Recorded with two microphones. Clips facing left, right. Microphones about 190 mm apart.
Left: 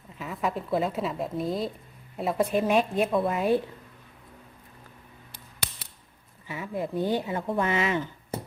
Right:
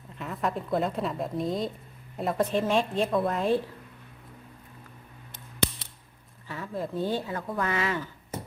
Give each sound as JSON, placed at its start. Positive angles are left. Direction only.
{"t": 0.2, "sound": "a woman's voice", "side_deg": 0}
{"t": 6.5, "sound": "speech", "side_deg": 15}